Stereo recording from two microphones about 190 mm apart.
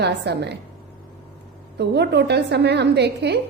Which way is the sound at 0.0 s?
60° right (ahead or behind).